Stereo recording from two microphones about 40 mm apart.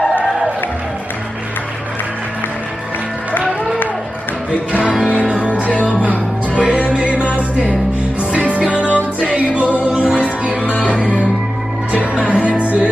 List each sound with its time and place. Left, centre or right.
5.0 s music: right
5.7 s music: left
6.5 s music: right
8.3 s music: right
8.7 s music: left
9.2 s music: right
10.6 s music: left
11.9 s music: right